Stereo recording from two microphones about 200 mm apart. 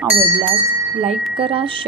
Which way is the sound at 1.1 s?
Centre (ahead or behind).